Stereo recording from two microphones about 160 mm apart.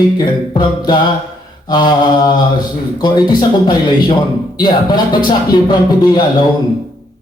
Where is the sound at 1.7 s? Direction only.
25° left (ahead or behind).